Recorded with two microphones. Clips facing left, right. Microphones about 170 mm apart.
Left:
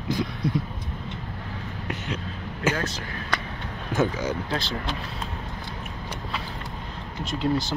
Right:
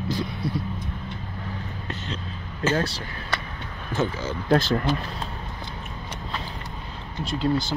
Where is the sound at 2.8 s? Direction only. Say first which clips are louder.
Right 3 dB; 35° right (ahead or behind).